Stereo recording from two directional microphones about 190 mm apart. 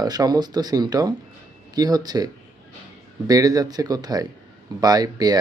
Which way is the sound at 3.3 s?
20° right (ahead or behind).